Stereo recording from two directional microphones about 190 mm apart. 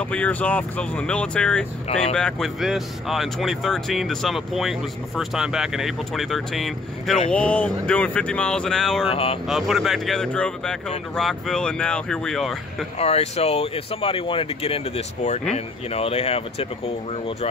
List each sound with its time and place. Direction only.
0.0 s speech: 5° left (ahead or behind)
9.1 s speech: 30° left (ahead or behind)
9.5 s speech: centre (ahead or behind)
13.0 s speech: 35° left (ahead or behind)